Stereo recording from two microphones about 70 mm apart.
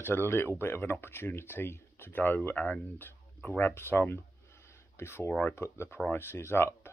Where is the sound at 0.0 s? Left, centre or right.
Left.